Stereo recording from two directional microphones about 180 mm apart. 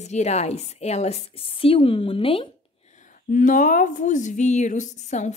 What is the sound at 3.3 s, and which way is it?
A woman's voice, 45° left (ahead or behind).